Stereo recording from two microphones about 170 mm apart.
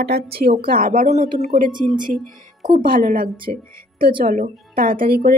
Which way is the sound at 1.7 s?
25° right (ahead or behind).